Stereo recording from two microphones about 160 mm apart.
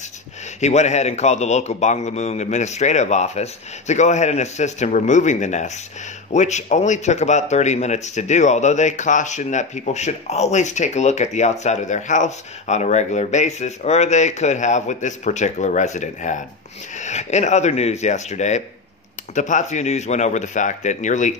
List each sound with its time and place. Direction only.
0.6 s speech: 45° left (ahead or behind)